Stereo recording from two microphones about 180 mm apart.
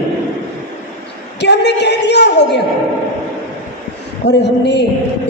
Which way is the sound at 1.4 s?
70° left (ahead or behind).